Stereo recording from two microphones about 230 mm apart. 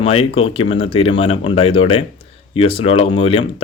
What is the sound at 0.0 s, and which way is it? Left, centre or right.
Speech, left.